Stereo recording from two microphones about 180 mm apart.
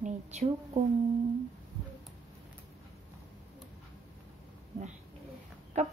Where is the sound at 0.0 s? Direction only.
40° right (ahead or behind).